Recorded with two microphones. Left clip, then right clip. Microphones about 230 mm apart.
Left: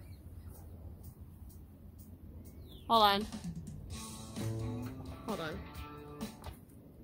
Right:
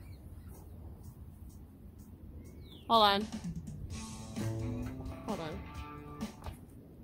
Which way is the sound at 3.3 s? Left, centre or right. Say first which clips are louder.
Right 2 dB; centre.